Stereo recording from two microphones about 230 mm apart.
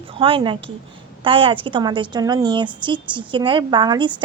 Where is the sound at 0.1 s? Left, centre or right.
Right.